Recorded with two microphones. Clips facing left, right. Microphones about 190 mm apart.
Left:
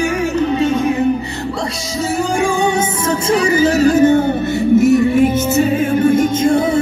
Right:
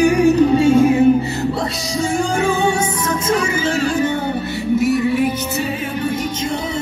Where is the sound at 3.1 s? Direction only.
35° left (ahead or behind).